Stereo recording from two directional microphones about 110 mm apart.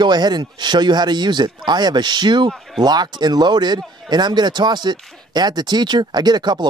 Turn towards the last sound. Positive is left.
turn(degrees=-40)  # may be behind; listen again after turning